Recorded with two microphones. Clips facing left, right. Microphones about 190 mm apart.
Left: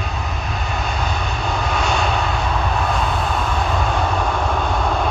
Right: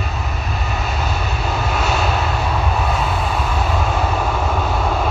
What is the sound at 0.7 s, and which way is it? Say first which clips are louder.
Vehicle: even; 5° right (ahead or behind).